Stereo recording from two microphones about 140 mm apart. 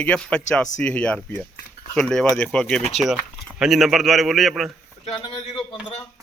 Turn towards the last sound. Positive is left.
turn(degrees=35)  # may be behind; listen again after turning